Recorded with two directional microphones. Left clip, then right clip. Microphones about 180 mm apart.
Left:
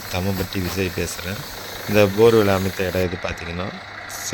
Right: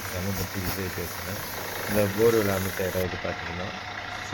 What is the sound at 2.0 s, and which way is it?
Speech, 70° left (ahead or behind).